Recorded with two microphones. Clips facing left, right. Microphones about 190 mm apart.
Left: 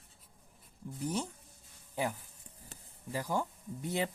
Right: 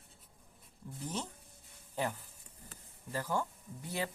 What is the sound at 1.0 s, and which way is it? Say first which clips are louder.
Speech: left 5 dB; 15° left (ahead or behind).